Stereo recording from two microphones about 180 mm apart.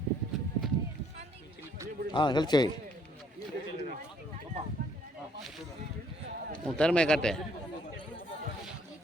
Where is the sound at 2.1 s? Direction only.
25° left (ahead or behind).